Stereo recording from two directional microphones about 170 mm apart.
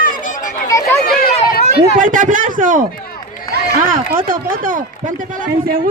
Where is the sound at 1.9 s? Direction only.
50° right (ahead or behind).